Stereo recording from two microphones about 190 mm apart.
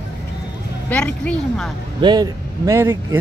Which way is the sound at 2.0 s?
20° right (ahead or behind).